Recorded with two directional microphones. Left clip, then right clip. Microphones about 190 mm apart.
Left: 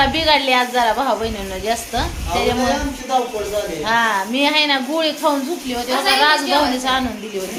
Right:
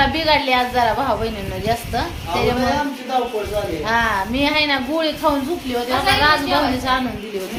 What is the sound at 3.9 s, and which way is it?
A woman's voice, 15° left (ahead or behind).